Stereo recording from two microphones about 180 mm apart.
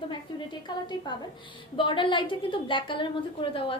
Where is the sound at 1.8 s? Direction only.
25° left (ahead or behind).